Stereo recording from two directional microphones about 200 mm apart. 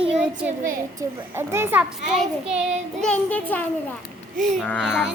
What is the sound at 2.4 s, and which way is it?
Child singing, 30° right (ahead or behind).